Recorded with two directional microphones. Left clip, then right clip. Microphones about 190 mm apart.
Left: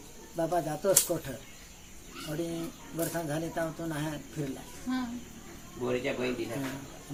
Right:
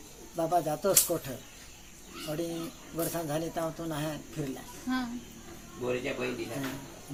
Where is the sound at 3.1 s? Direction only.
15° right (ahead or behind).